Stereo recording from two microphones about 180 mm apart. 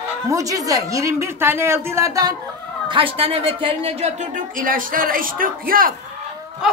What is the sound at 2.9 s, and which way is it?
Speech, 30° right (ahead or behind).